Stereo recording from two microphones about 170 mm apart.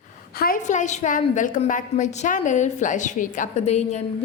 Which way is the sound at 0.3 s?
55° left (ahead or behind).